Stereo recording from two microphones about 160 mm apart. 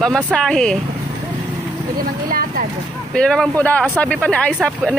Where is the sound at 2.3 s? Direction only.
65° right (ahead or behind).